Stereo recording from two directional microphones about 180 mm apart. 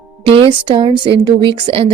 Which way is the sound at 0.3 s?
30° right (ahead or behind).